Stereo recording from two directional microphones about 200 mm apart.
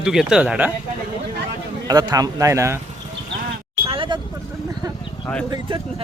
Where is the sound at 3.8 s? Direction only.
25° right (ahead or behind).